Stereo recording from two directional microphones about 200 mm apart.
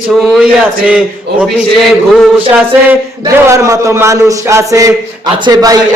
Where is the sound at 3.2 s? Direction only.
15° right (ahead or behind).